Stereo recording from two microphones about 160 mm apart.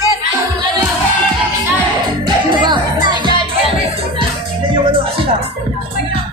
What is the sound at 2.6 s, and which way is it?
Music, 30° right (ahead or behind).